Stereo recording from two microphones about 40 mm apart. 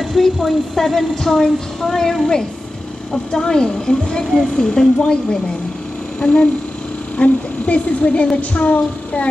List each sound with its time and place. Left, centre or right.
0.0 s a woman's voice: centre; by 9.3 s left